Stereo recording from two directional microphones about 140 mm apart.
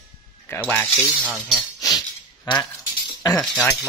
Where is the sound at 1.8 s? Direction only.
30° left (ahead or behind).